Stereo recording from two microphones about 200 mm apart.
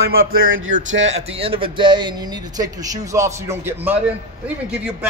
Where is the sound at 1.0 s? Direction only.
30° right (ahead or behind); by 4.0 s 10° right (ahead or behind).